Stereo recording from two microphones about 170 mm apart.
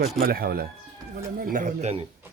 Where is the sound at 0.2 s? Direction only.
60° right (ahead or behind).